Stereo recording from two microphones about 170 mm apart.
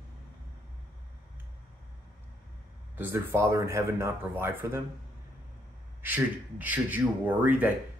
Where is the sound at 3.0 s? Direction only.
15° right (ahead or behind).